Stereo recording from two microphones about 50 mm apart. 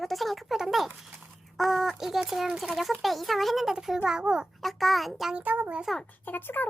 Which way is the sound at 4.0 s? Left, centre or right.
Centre.